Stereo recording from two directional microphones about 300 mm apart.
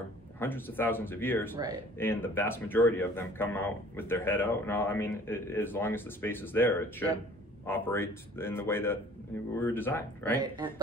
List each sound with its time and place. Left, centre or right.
0.4 s speech: centre
10.4 s speech: centre